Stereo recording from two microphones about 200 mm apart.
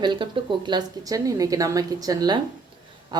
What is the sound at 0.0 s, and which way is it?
A woman's voice, 25° right (ahead or behind).